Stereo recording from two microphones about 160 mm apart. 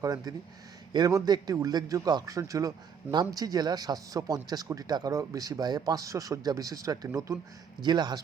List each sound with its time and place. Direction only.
0.0 s a man's voice: 20° right (ahead or behind)